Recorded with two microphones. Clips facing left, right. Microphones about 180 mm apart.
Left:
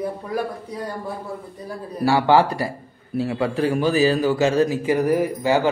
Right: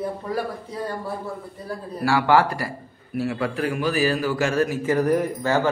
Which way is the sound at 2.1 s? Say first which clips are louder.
Left 2 dB; 20° left (ahead or behind).